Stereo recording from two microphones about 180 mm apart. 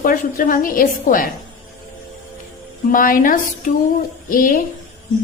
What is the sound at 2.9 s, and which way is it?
A woman's voice, 50° left (ahead or behind).